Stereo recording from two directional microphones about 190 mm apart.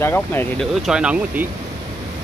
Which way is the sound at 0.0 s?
10° left (ahead or behind).